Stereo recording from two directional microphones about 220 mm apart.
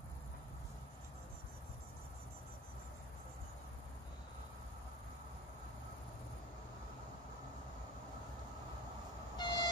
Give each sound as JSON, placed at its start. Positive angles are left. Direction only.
{"t": 9.4, "sound": "train", "side_deg": 20}